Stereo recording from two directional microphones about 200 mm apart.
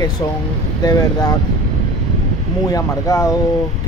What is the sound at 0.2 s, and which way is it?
Speech, 20° left (ahead or behind).